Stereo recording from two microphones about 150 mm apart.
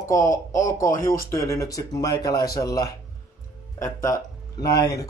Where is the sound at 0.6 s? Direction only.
20° left (ahead or behind).